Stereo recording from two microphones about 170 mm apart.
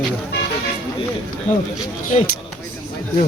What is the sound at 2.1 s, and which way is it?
Speech, 40° left (ahead or behind).